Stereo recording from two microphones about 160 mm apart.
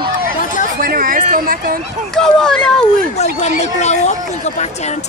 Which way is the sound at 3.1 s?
45° left (ahead or behind).